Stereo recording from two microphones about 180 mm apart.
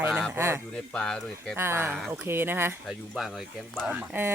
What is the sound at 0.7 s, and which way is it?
Speech, 5° left (ahead or behind).